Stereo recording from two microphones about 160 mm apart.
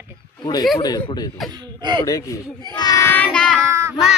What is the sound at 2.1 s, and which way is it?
Speech, 20° left (ahead or behind).